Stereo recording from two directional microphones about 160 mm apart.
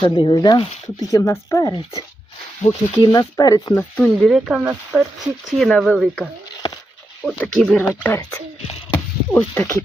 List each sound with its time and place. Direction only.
0.0 s speech: 30° left (ahead or behind)
3.9 s speech: 5° left (ahead or behind)
7.3 s speech: 5° left (ahead or behind)